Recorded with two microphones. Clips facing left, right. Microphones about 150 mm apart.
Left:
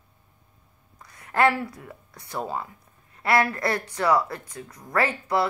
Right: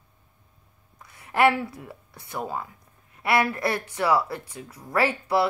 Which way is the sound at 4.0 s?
5° right (ahead or behind).